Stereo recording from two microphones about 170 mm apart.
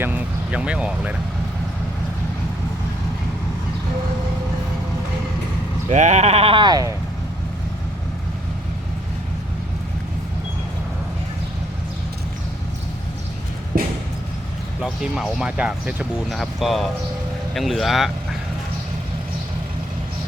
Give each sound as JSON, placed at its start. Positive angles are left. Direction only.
{"t": 0.0, "sound": "vehicle", "side_deg": -10}
{"t": 5.9, "sound": "speech", "side_deg": -45}
{"t": 14.8, "sound": "speech", "side_deg": -5}